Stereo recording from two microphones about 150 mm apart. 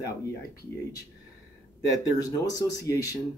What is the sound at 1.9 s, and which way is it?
Speech, 25° left (ahead or behind).